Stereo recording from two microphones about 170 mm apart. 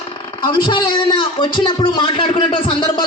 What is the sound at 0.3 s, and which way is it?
A man's voice, 30° left (ahead or behind).